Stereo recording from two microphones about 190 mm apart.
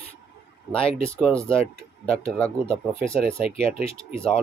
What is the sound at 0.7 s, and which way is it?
Speech, 30° left (ahead or behind).